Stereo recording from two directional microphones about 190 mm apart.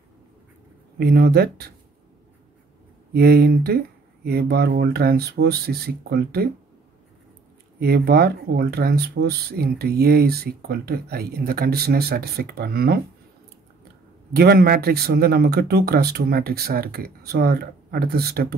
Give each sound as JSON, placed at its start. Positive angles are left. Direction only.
{"t": 0.9, "sound": "speech", "side_deg": -60}
{"t": 3.1, "sound": "speech", "side_deg": -55}
{"t": 7.8, "sound": "speech", "side_deg": -55}
{"t": 14.3, "sound": "speech", "side_deg": -55}